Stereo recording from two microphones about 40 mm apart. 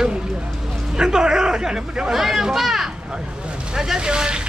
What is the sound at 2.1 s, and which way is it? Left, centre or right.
Speech, centre.